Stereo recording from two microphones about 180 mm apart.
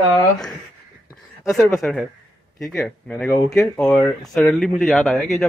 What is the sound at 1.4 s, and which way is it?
A man's voice, centre (ahead or behind).